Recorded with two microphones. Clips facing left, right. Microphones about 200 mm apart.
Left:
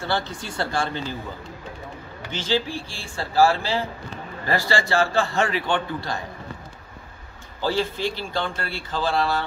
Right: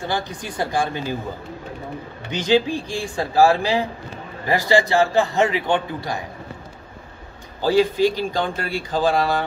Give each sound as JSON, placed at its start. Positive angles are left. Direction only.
{"t": 0.0, "sound": "a man's voice", "side_deg": -15}
{"t": 2.3, "sound": "a man's voice", "side_deg": -15}
{"t": 7.6, "sound": "a man's voice", "side_deg": -15}